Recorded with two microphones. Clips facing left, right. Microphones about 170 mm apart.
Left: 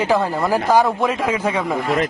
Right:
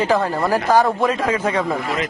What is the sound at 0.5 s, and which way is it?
A man's voice, 15° left (ahead or behind).